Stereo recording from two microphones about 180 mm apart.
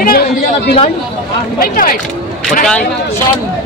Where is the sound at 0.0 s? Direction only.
55° left (ahead or behind).